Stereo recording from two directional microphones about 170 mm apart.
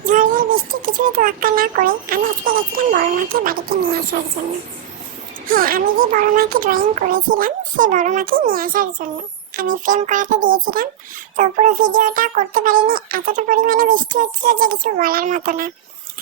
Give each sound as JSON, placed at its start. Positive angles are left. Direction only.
{"t": 0.0, "sound": "a child's voice", "side_deg": -50}
{"t": 5.5, "sound": "a child's voice", "side_deg": -55}